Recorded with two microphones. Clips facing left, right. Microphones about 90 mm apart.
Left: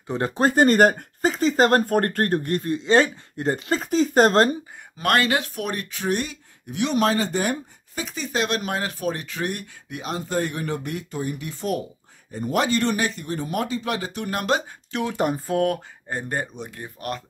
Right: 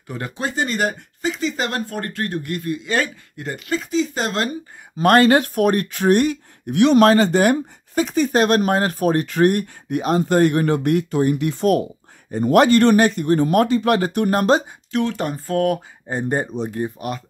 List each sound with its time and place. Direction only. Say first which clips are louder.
0.4 s speech: left 6 dB; 45° left (ahead or behind)
4.9 s speech: right 8 dB; 35° right (ahead or behind)
14.9 s speech: right 5 dB; 5° left (ahead or behind)
15.1 s speech: even; 15° left (ahead or behind)
16.1 s speech: right 6 dB; 20° right (ahead or behind)